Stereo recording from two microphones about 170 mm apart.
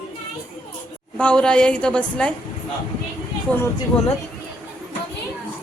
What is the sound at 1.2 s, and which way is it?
Speech, 5° left (ahead or behind).